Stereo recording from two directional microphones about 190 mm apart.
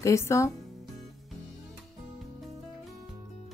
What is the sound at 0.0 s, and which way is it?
Speech, 15° left (ahead or behind).